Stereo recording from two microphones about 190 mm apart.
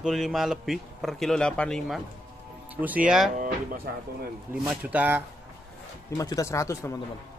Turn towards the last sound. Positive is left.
turn(degrees=15)  # may be behind; listen again after turning